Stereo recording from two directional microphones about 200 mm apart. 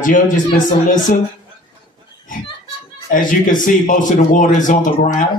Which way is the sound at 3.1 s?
40° left (ahead or behind).